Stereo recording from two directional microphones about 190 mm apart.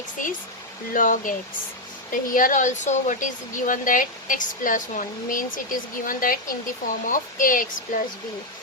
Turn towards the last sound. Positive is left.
turn(degrees=45)  # may be behind; listen again after turning